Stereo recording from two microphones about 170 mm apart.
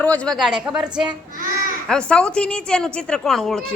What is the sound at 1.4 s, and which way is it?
Babbling, 55° right (ahead or behind).